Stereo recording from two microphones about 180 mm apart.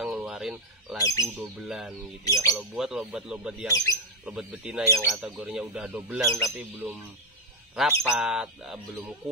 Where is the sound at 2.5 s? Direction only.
Centre (ahead or behind).